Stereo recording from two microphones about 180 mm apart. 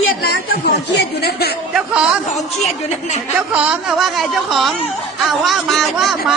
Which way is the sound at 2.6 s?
40° left (ahead or behind).